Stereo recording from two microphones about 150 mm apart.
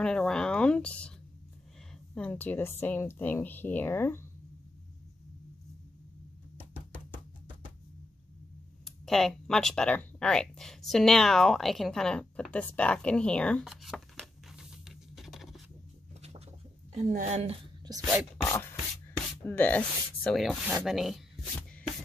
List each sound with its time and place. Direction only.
0.0 s speech: 5° left (ahead or behind)
2.1 s speech: 10° left (ahead or behind)
6.6 s music: 10° left (ahead or behind)
8.8 s speech: centre (ahead or behind)
16.2 s a sound: 45° right (ahead or behind)
16.9 s a woman's voice: 55° right (ahead or behind)
17.4 s speech: 40° right (ahead or behind)
17.9 s speech: 25° right (ahead or behind)
18.4 s music: 15° left (ahead or behind)
19.4 s speech: 10° left (ahead or behind)
20.2 s speech: centre (ahead or behind)